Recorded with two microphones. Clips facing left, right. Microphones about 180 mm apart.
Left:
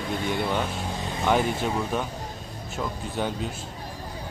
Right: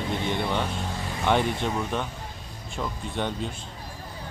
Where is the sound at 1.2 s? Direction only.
5° left (ahead or behind).